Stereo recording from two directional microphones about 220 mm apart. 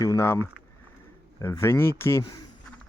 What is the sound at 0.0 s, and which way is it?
Speech, 15° left (ahead or behind).